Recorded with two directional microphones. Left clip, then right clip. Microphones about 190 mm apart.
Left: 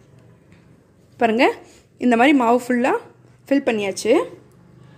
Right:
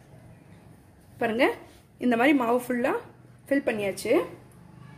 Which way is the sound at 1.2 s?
45° left (ahead or behind).